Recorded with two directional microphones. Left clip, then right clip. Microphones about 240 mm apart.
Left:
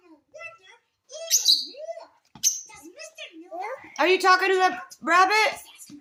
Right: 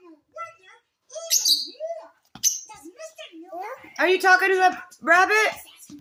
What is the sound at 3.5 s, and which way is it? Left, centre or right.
Speech, centre.